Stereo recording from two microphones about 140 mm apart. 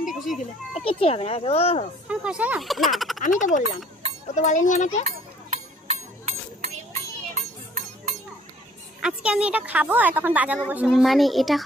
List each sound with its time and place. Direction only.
0.0 s children playing: centre (ahead or behind)
0.8 s speech: 45° left (ahead or behind)
2.0 s a woman's voice: 10° right (ahead or behind)
3.2 s a child's voice: 65° left (ahead or behind)
5.0 s a sound: 55° right (ahead or behind)
6.6 s children playing: 55° right (ahead or behind)
9.0 s a woman's voice: 10° right (ahead or behind)